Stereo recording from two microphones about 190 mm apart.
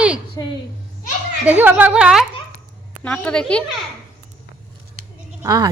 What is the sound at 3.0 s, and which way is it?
Speech, 5° left (ahead or behind).